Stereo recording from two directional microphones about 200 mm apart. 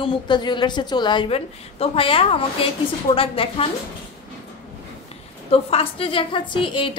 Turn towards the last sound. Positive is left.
turn(degrees=25)  # may be behind; listen again after turning